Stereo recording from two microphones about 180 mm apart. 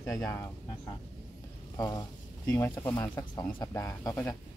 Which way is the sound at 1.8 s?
20° left (ahead or behind).